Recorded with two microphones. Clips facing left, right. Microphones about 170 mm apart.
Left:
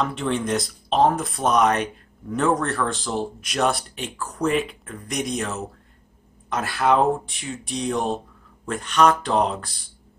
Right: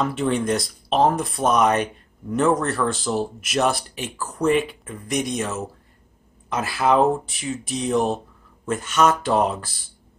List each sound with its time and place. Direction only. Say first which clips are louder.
0.0 s speech: right 2 dB; 5° right (ahead or behind)